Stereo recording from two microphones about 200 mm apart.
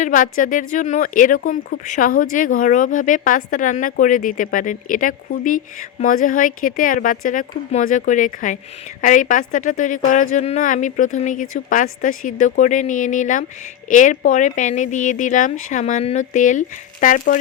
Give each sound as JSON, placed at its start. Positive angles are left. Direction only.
{"t": 0.0, "sound": "speech", "side_deg": 40}